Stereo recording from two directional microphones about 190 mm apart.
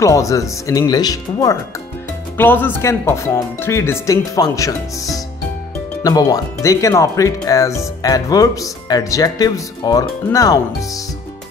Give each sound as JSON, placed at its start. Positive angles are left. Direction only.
{"t": 0.0, "sound": "speech", "side_deg": 15}